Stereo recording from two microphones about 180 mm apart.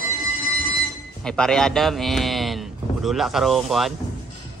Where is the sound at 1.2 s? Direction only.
5° left (ahead or behind).